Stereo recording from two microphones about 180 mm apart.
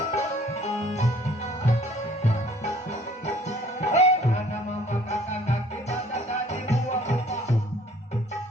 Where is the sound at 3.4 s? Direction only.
40° left (ahead or behind).